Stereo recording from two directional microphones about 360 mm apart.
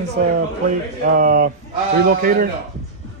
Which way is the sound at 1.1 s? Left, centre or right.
Right.